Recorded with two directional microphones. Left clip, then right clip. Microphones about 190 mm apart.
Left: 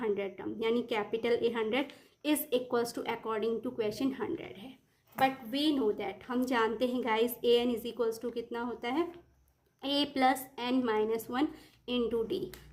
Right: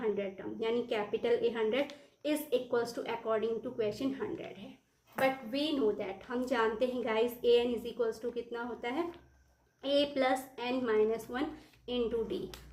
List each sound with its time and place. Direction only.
0.0 s a woman's voice: 45° left (ahead or behind)